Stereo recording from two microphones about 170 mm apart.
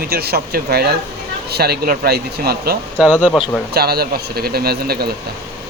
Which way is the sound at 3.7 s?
65° right (ahead or behind).